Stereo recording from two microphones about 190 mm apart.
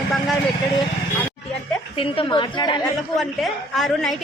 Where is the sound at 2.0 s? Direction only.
25° left (ahead or behind).